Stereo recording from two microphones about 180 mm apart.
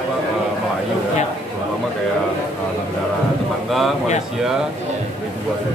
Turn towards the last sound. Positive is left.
turn(degrees=0)  # may be behind; listen again after turning